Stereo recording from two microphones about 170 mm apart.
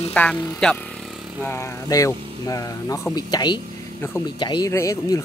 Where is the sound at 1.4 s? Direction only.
15° left (ahead or behind).